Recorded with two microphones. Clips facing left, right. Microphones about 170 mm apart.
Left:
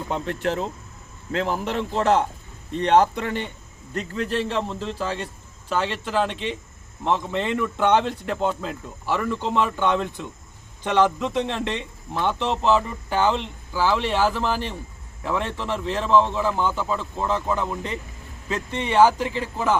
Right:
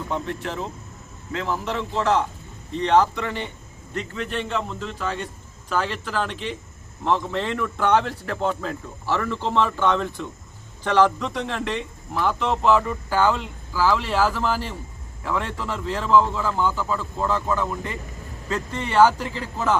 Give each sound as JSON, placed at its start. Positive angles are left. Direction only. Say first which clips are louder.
{"t": 0.3, "sound": "speech", "louder": "left 4 dB", "side_deg": 60}
{"t": 2.0, "sound": "speech", "louder": "left 2 dB", "side_deg": 55}
{"t": 3.9, "sound": "a man's voice", "louder": "left 3 dB", "side_deg": 35}